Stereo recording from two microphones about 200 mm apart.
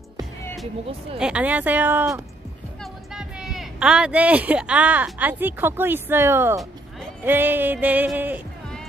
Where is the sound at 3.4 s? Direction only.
5° right (ahead or behind).